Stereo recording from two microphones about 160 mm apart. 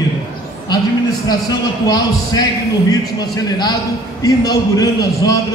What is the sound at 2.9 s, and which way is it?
A man's voice, 25° left (ahead or behind).